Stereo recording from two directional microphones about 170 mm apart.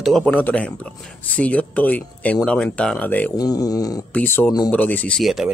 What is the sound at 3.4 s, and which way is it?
Speech, 20° left (ahead or behind).